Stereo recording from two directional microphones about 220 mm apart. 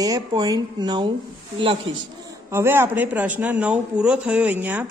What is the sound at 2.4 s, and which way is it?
Speech, 10° right (ahead or behind).